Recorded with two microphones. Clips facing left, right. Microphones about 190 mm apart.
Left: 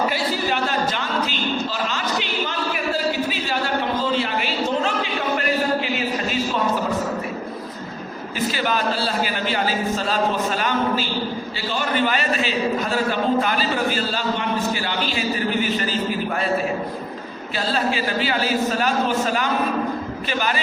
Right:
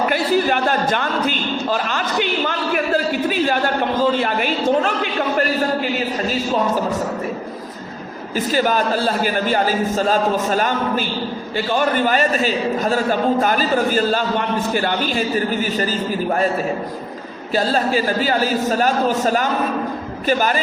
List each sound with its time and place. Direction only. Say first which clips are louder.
0.1 s a sound: right 6 dB; 50° right (ahead or behind)
8.4 s a man's voice: right 5 dB; 45° right (ahead or behind)
17.5 s a man's voice: right 5 dB; 40° right (ahead or behind)